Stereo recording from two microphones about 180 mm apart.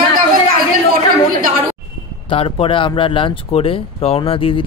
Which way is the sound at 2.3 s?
30° left (ahead or behind).